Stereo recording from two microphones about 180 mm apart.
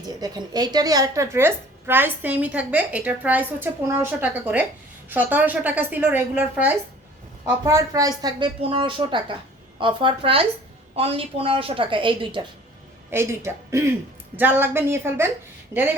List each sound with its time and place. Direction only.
0.2 s a woman's voice: 25° right (ahead or behind)
13.1 s a woman's voice: 15° right (ahead or behind)